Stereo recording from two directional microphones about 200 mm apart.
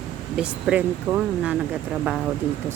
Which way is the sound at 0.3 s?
5° right (ahead or behind).